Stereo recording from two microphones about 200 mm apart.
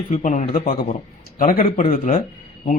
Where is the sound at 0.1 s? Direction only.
40° left (ahead or behind).